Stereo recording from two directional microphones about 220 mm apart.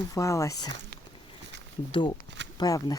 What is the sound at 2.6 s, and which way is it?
Speech, 15° left (ahead or behind).